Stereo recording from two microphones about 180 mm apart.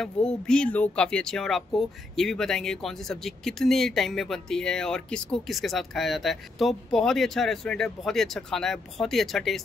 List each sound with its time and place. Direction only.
0.0 s speech: 5° left (ahead or behind)